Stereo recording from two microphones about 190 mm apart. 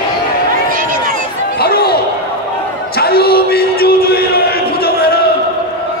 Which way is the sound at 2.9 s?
55° left (ahead or behind).